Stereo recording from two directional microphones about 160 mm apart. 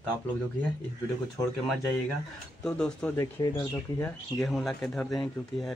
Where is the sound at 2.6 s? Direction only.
5° left (ahead or behind).